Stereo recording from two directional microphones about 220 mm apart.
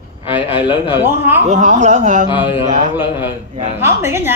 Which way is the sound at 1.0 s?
10° right (ahead or behind).